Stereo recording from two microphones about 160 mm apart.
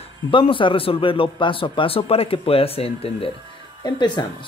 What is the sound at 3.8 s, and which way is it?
Speech, 25° left (ahead or behind).